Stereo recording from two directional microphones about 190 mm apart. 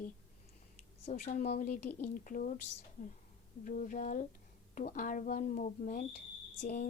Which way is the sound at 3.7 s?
45° left (ahead or behind).